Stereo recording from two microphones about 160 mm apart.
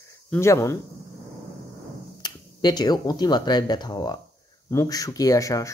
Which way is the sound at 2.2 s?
25° left (ahead or behind).